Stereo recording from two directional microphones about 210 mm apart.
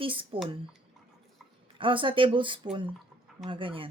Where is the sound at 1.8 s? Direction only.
25° right (ahead or behind).